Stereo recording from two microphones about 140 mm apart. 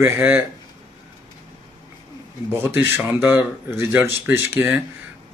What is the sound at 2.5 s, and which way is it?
Speech, 15° right (ahead or behind).